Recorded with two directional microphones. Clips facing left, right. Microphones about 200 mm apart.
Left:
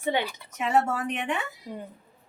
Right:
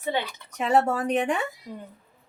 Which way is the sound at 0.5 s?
35° right (ahead or behind).